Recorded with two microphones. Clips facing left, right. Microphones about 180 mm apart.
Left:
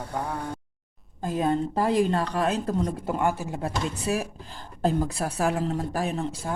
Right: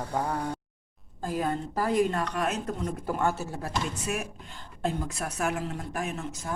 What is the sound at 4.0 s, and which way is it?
A woman's voice, 35° left (ahead or behind).